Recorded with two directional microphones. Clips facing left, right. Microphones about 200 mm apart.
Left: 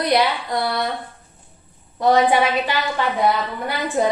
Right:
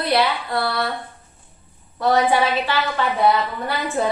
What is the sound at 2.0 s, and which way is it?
A woman's voice, 20° left (ahead or behind).